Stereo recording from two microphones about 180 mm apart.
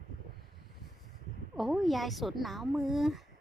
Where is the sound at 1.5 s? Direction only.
Centre (ahead or behind).